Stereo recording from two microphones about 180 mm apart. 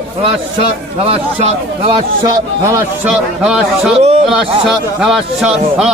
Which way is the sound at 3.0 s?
5° right (ahead or behind).